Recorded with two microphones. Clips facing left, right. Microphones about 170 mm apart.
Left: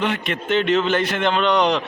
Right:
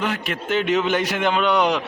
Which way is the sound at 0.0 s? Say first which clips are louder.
Left 2 dB; 5° right (ahead or behind).